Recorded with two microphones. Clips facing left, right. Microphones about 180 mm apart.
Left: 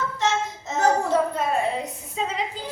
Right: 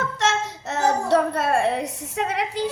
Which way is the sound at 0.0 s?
75° right (ahead or behind).